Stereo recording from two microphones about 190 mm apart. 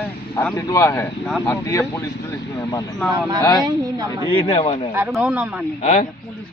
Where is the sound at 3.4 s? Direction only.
20° left (ahead or behind).